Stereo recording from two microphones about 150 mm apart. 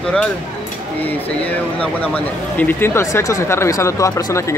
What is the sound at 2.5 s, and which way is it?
Speech, 15° left (ahead or behind).